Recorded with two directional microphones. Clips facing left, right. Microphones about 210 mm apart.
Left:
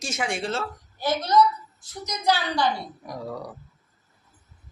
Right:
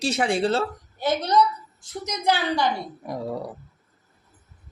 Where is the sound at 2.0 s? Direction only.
20° right (ahead or behind).